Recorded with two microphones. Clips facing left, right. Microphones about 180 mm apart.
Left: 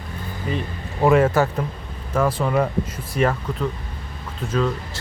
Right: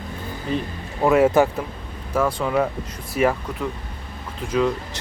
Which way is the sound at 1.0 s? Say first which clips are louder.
Right 1 dB; centre (ahead or behind).